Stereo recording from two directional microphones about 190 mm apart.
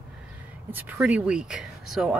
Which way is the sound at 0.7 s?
10° right (ahead or behind).